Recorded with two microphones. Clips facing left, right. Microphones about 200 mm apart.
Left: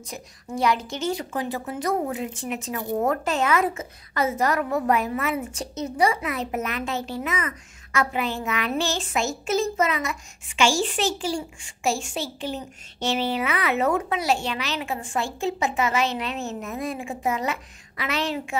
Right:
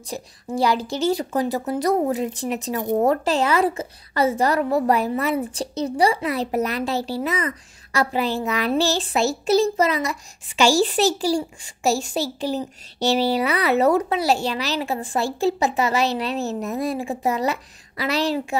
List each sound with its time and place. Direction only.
0.1 s a woman's voice: 35° right (ahead or behind)